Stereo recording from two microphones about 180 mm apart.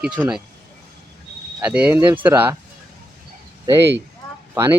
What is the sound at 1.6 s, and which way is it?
Speech, 5° right (ahead or behind).